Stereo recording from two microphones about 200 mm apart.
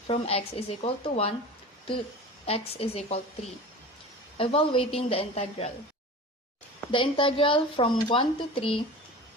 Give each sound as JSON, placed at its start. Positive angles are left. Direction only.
{"t": 0.1, "sound": "a woman's voice", "side_deg": 30}
{"t": 2.5, "sound": "a woman's voice", "side_deg": 30}
{"t": 4.4, "sound": "a woman's voice", "side_deg": 25}
{"t": 6.9, "sound": "a woman's voice", "side_deg": 25}